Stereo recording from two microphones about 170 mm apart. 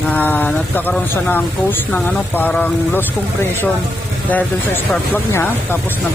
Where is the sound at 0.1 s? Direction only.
10° left (ahead or behind).